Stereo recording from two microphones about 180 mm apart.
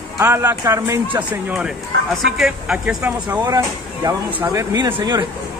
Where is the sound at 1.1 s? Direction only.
5° right (ahead or behind).